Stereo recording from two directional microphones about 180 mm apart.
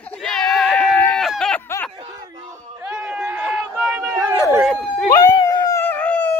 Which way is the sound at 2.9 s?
15° right (ahead or behind).